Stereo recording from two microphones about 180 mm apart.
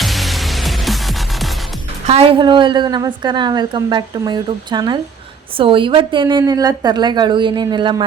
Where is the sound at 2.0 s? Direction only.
35° right (ahead or behind).